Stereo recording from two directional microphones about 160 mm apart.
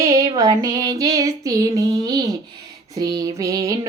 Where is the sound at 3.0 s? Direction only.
25° right (ahead or behind).